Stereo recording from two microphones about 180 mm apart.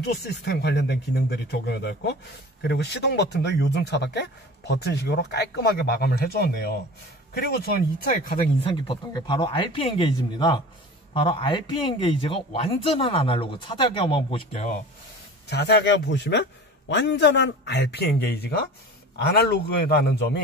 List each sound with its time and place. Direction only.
0.0 s speech: 60° left (ahead or behind)
8.6 s a man's voice: 30° left (ahead or behind)
15.4 s a man's voice: 65° left (ahead or behind)